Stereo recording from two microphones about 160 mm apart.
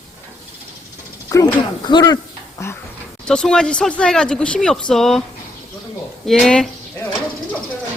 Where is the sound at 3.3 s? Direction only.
5° left (ahead or behind).